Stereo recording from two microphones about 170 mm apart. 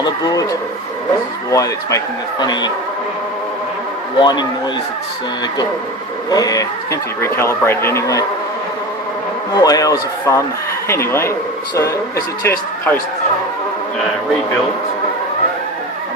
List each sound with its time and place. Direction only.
0.0 s a man's voice: 20° left (ahead or behind)
1.5 s a man's voice: 20° left (ahead or behind)
4.2 s a man's voice: 25° left (ahead or behind)
6.3 s speech: 20° left (ahead or behind)
9.6 s a man's voice: 20° left (ahead or behind)